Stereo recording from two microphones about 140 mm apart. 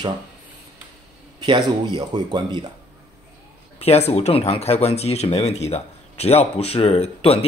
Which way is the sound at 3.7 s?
50° left (ahead or behind).